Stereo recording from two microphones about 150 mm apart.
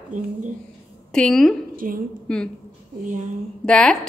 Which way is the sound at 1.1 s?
5° left (ahead or behind).